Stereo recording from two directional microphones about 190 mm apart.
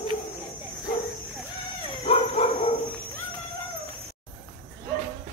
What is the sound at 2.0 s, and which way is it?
Dog, 35° left (ahead or behind).